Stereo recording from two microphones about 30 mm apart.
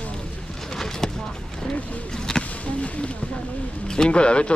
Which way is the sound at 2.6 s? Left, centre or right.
Left.